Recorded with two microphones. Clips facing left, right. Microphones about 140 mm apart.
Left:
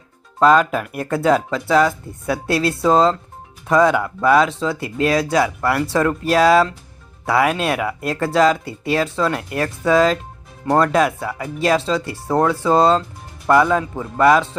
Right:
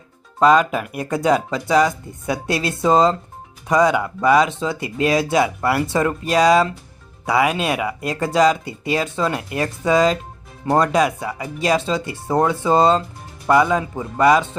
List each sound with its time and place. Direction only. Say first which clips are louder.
0.3 s speech: left 1 dB; centre (ahead or behind)